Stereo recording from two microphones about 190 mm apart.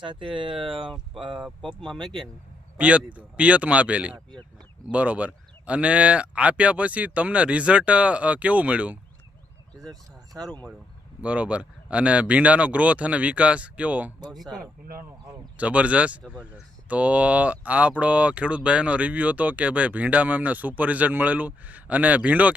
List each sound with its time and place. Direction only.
0.0 s speech: 25° right (ahead or behind)
2.0 s speech: 25° right (ahead or behind)
2.7 s speech: 5° right (ahead or behind)
9.9 s speech: 20° right (ahead or behind)
11.2 s speech: 5° right (ahead or behind)
14.6 s speech: 50° right (ahead or behind)
15.5 s speech: 5° right (ahead or behind)